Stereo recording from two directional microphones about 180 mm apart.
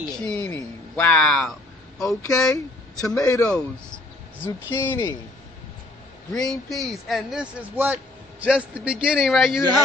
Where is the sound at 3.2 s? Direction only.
15° left (ahead or behind).